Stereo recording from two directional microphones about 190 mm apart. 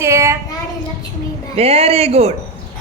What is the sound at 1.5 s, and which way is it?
Speech, 35° right (ahead or behind).